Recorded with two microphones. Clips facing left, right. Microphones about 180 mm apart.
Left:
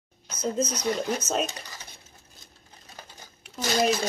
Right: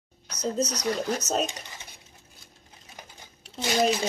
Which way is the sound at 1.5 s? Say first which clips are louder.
Even; 15° right (ahead or behind).